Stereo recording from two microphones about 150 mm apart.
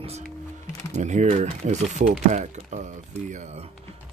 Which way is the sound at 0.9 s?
50° right (ahead or behind).